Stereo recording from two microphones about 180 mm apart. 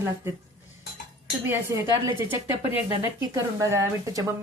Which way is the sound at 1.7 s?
15° right (ahead or behind).